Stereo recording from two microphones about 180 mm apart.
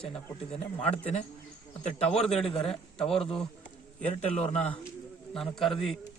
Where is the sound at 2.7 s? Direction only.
5° left (ahead or behind).